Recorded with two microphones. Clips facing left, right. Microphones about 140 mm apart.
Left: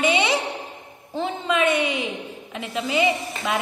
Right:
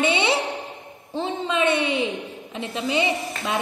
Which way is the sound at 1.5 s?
30° right (ahead or behind).